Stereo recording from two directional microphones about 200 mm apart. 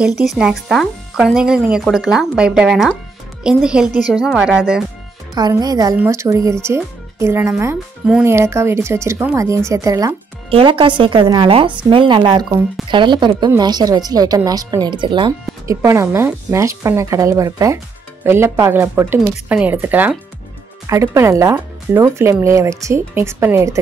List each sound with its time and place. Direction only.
0.0 s speech: centre (ahead or behind)
5.3 s a woman's voice: 20° right (ahead or behind)